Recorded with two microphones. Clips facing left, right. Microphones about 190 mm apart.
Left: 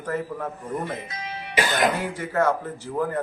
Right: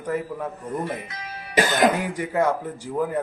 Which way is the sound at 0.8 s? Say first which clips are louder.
Right 1 dB; 25° left (ahead or behind).